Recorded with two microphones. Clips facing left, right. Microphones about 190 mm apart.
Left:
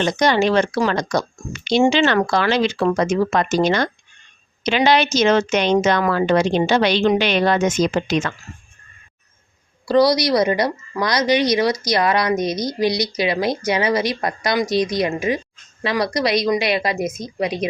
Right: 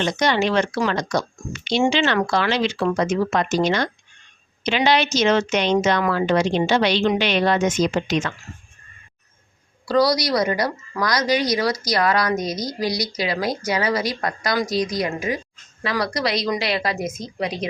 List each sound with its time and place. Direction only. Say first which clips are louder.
0.0 s speech: left 3 dB; 40° left (ahead or behind)
9.8 s speech: left 3 dB; 25° left (ahead or behind)